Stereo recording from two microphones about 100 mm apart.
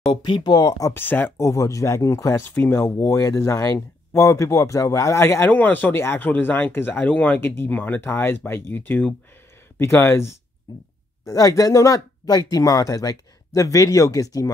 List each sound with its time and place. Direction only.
0.1 s speech: 50° left (ahead or behind)
0.9 s speech: 20° left (ahead or behind)
1.5 s speech: 35° left (ahead or behind)